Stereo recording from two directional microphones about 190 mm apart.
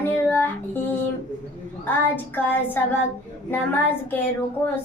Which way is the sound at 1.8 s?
10° left (ahead or behind).